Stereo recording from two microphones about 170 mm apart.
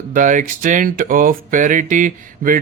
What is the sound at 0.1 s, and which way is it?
Speech, 50° right (ahead or behind).